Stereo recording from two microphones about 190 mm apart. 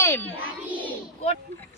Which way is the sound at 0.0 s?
10° left (ahead or behind).